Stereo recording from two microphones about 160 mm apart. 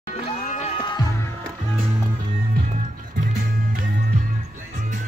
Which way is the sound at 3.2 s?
60° right (ahead or behind).